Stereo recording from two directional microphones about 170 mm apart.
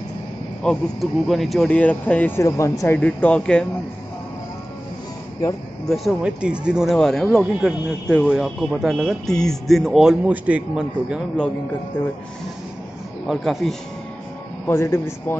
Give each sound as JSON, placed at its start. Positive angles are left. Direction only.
{"t": 0.6, "sound": "speech", "side_deg": 5}
{"t": 3.0, "sound": "speech", "side_deg": 10}
{"t": 5.9, "sound": "speech", "side_deg": -5}
{"t": 13.3, "sound": "speech", "side_deg": 0}
{"t": 14.7, "sound": "speech", "side_deg": 15}